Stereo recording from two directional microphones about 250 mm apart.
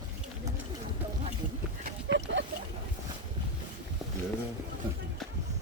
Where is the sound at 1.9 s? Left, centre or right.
Right.